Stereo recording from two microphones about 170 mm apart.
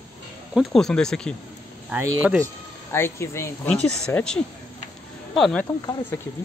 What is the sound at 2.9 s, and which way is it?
Speech, 15° left (ahead or behind).